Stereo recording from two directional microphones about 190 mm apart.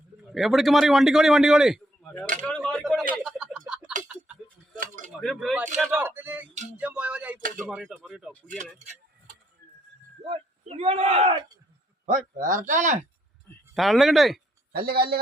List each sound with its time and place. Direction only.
0.2 s a man's voice: centre (ahead or behind)
2.4 s a sound: 5° left (ahead or behind)
5.2 s speech: centre (ahead or behind)
7.3 s speech: 45° right (ahead or behind)
7.6 s speech: centre (ahead or behind)
10.2 s speech: 30° right (ahead or behind)
12.4 s speech: 40° right (ahead or behind)
13.7 s speech: centre (ahead or behind)
14.7 s a man's voice: 55° right (ahead or behind)